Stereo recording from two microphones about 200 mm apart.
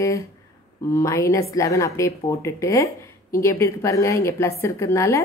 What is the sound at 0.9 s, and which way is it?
A woman's voice, 15° left (ahead or behind).